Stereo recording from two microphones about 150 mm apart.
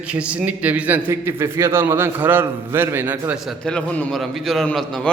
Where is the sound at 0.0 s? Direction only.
5° right (ahead or behind).